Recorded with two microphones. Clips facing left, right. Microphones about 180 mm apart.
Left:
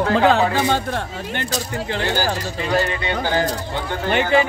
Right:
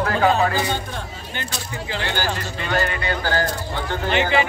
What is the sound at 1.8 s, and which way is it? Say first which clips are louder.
Speech: left 2 dB; 45° left (ahead or behind).